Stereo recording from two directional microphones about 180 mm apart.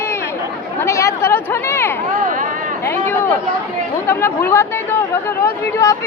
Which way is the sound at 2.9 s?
10° left (ahead or behind).